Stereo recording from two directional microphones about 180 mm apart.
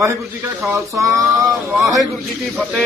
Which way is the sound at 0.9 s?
15° right (ahead or behind).